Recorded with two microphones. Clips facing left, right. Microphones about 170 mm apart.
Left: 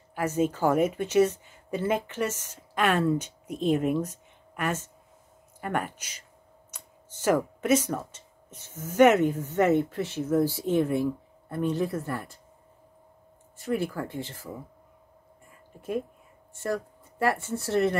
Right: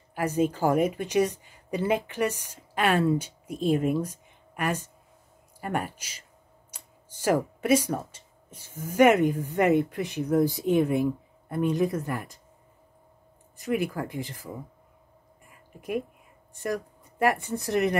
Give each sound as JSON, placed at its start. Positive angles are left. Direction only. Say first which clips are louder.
{"t": 0.2, "sound": "speech", "louder": "even", "side_deg": -10}
{"t": 13.6, "sound": "speech", "louder": "right 1 dB", "side_deg": -15}
{"t": 16.6, "sound": "speech", "louder": "even", "side_deg": -15}